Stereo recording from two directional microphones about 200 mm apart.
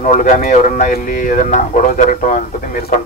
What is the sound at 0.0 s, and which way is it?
Speech, 40° left (ahead or behind).